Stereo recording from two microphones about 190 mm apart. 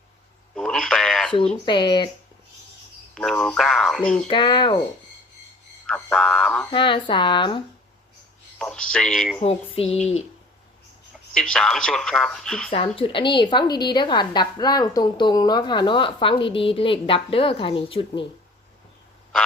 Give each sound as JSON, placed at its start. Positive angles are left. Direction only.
{"t": 0.5, "sound": "radio", "side_deg": 5}
{"t": 1.6, "sound": "a woman's voice", "side_deg": 25}
{"t": 3.2, "sound": "speech", "side_deg": 5}
{"t": 4.3, "sound": "a woman's voice", "side_deg": 25}
{"t": 5.8, "sound": "a sound", "side_deg": 5}
{"t": 6.7, "sound": "a woman's voice", "side_deg": 25}
{"t": 8.5, "sound": "speech", "side_deg": 5}
{"t": 9.4, "sound": "a sound", "side_deg": 30}
{"t": 11.3, "sound": "speech", "side_deg": 5}
{"t": 12.7, "sound": "a woman's voice", "side_deg": 30}